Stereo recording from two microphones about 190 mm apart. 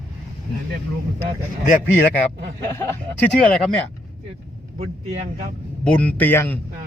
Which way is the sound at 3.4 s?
5° left (ahead or behind).